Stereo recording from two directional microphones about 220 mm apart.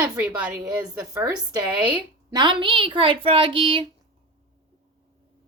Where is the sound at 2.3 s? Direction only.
20° right (ahead or behind).